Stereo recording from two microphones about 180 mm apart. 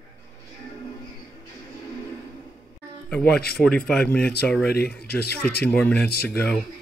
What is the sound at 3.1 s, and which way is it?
Speech, 5° left (ahead or behind).